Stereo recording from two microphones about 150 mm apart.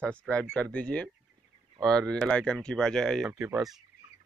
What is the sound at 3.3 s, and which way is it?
Speech, 20° right (ahead or behind).